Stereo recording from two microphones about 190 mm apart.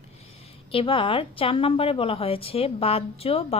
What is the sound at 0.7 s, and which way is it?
A woman's voice, 30° left (ahead or behind).